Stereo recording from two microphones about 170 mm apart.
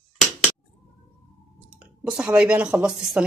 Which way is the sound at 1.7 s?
5° right (ahead or behind).